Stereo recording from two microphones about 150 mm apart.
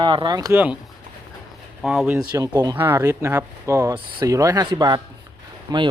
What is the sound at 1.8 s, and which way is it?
Speech, centre (ahead or behind).